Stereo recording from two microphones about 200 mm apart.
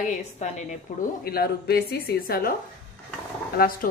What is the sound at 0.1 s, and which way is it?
Speech, 40° left (ahead or behind).